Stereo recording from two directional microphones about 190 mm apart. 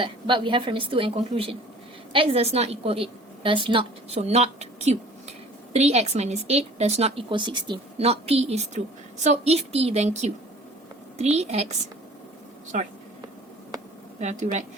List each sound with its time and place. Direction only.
0.0 s a woman's voice: 25° right (ahead or behind)
14.2 s a woman's voice: 40° right (ahead or behind)